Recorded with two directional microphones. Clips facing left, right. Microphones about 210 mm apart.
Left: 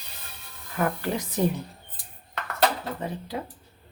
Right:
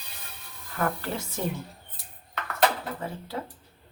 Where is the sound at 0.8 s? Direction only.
15° left (ahead or behind).